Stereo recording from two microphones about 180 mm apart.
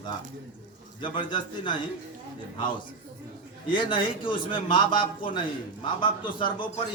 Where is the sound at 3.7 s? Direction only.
30° left (ahead or behind).